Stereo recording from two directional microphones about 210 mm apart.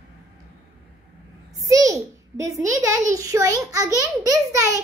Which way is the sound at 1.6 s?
15° right (ahead or behind).